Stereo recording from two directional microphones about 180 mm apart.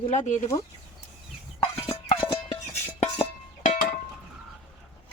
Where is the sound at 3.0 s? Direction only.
40° left (ahead or behind).